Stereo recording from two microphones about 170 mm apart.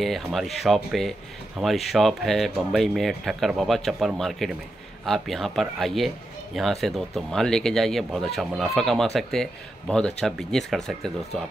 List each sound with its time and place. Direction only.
0.0 s a man's voice: centre (ahead or behind)